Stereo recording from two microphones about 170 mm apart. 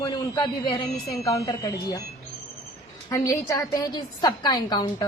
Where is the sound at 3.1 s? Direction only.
20° left (ahead or behind).